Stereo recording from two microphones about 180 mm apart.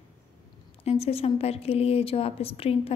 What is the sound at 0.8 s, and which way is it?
A woman's voice, 35° left (ahead or behind).